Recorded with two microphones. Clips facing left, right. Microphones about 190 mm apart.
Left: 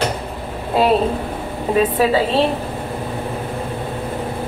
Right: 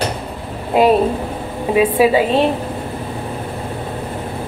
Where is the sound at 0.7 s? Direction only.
15° right (ahead or behind).